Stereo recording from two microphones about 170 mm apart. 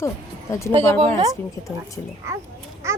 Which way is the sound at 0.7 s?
35° right (ahead or behind).